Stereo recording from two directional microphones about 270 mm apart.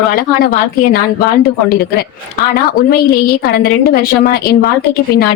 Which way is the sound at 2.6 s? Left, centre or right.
Left.